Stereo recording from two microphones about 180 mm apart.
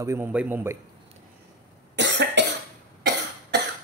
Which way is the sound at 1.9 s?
75° right (ahead or behind).